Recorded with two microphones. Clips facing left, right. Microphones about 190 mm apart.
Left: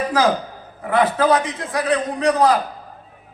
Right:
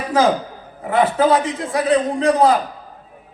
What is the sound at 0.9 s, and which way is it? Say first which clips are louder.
A man's voice: right 1 dB; 25° right (ahead or behind).